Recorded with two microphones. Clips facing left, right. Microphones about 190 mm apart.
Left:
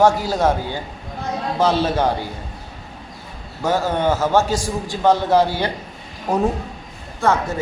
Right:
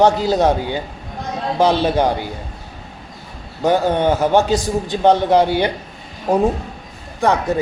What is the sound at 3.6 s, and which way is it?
A man's voice, 15° right (ahead or behind).